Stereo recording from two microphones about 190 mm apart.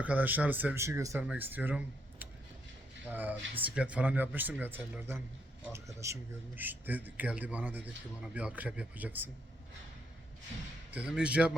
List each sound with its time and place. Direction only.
0.0 s speech: 10° right (ahead or behind)
10.9 s speech: 5° right (ahead or behind)